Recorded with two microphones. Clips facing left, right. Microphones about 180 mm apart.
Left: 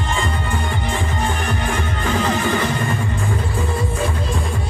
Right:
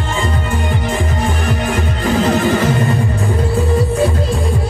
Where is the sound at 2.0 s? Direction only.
40° right (ahead or behind).